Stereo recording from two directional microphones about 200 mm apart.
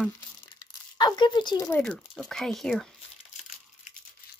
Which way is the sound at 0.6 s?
20° left (ahead or behind).